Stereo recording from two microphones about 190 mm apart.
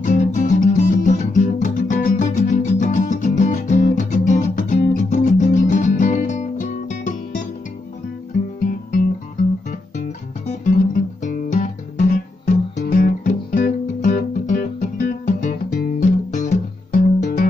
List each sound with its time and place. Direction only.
0.0 s music: 40° left (ahead or behind)
9.7 s music: 40° left (ahead or behind)